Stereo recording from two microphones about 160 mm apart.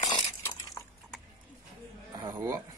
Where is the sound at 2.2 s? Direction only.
20° right (ahead or behind).